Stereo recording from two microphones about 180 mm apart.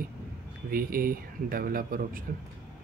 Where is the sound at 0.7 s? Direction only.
55° right (ahead or behind).